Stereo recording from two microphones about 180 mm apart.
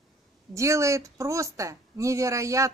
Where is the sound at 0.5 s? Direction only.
15° right (ahead or behind).